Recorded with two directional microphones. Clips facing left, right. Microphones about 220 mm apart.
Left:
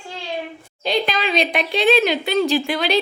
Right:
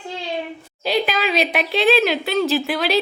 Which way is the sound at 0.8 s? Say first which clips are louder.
Right 1 dB; 5° right (ahead or behind).